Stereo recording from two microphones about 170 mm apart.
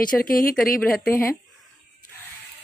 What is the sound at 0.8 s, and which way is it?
Speech, 5° left (ahead or behind).